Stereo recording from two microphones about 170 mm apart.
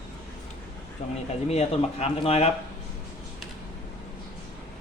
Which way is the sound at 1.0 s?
40° left (ahead or behind).